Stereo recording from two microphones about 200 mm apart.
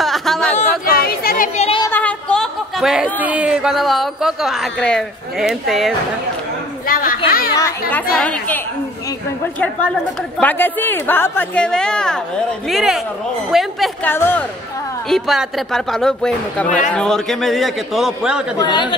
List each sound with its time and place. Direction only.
0.0 s chatter: centre (ahead or behind)
0.6 s chatter: 45° left (ahead or behind)
1.6 s a sound: 25° left (ahead or behind)
1.9 s speech: 10° left (ahead or behind)
6.9 s a child's voice: 45° left (ahead or behind)
7.2 s chatter: 45° left (ahead or behind)
7.9 s a man's voice: 5° left (ahead or behind)
14.1 s a man's voice: 10° left (ahead or behind)
15.0 s speech: centre (ahead or behind)
18.6 s speech: 25° left (ahead or behind)